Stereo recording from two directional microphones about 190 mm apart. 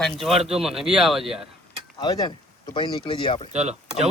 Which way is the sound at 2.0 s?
25° left (ahead or behind).